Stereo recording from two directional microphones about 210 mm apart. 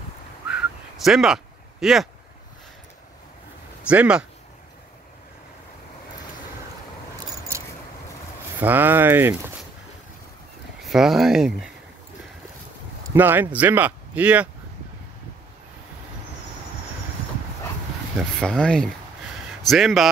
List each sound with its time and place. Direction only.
1.0 s speech: centre (ahead or behind)
3.8 s speech: 5° right (ahead or behind)
8.5 s speech: 10° right (ahead or behind)
10.8 s speech: centre (ahead or behind)
13.1 s speech: 10° right (ahead or behind)
18.4 s speech: 5° left (ahead or behind)